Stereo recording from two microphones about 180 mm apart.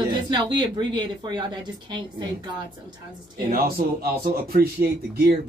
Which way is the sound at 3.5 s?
55° right (ahead or behind).